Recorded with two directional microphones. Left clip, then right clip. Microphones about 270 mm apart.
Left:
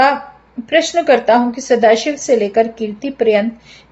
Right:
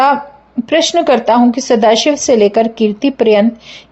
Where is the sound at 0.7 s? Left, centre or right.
Right.